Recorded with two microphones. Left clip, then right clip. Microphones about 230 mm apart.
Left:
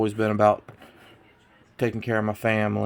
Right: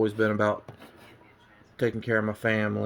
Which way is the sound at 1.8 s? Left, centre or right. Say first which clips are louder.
Left 1 dB; left.